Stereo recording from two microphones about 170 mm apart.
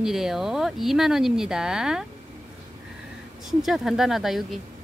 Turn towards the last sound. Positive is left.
turn(degrees=0)  # may be behind; listen again after turning